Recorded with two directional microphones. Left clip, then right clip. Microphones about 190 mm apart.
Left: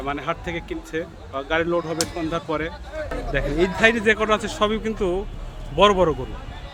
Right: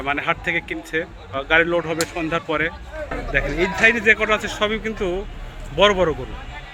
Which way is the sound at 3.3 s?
25° left (ahead or behind).